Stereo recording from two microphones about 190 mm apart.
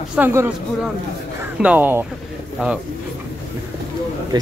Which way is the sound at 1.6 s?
10° right (ahead or behind).